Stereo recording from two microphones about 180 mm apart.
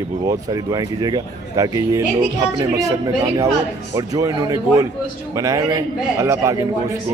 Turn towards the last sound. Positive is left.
turn(degrees=-15)  # may be behind; listen again after turning